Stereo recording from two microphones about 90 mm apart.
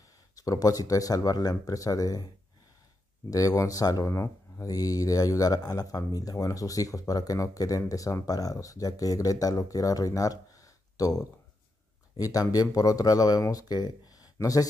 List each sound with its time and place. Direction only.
0.4 s speech: 40° left (ahead or behind)
3.3 s speech: 40° left (ahead or behind)
4.1 s speech: 30° left (ahead or behind)
4.6 s speech: 45° left (ahead or behind)
12.2 s speech: 40° left (ahead or behind)